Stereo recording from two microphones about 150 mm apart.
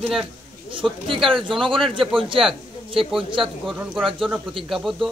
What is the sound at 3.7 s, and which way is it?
Speech, 5° right (ahead or behind).